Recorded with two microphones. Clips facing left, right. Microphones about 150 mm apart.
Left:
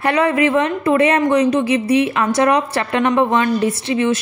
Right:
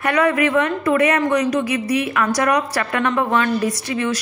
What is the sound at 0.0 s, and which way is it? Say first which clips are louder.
A woman's voice: left 2 dB; 25° left (ahead or behind).